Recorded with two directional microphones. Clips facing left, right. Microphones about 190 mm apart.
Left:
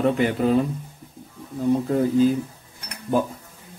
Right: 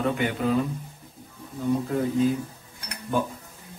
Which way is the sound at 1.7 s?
30° left (ahead or behind).